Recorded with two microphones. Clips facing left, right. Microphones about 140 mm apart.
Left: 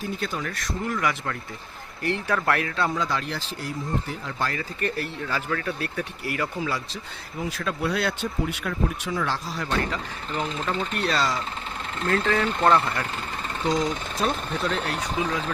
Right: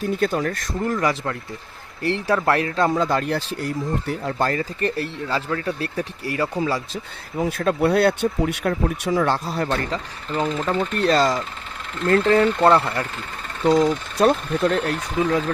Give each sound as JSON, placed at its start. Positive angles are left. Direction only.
{"t": 0.2, "sound": "speech", "side_deg": -50}
{"t": 2.0, "sound": "speech", "side_deg": -30}
{"t": 7.3, "sound": "speech", "side_deg": -50}
{"t": 9.6, "sound": "speech", "side_deg": -35}
{"t": 10.4, "sound": "speech", "side_deg": -45}
{"t": 12.4, "sound": "speech", "side_deg": -30}
{"t": 13.7, "sound": "speech", "side_deg": -55}